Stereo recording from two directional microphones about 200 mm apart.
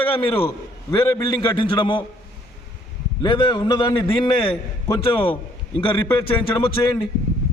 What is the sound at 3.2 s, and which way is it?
A man's voice, 25° left (ahead or behind).